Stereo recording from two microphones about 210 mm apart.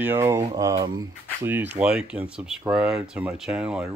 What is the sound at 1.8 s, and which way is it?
Speech, 5° right (ahead or behind).